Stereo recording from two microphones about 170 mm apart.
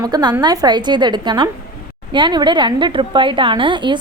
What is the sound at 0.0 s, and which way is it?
A woman's voice, 25° right (ahead or behind).